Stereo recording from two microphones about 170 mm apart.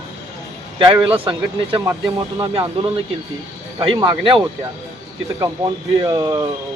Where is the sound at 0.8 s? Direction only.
30° right (ahead or behind).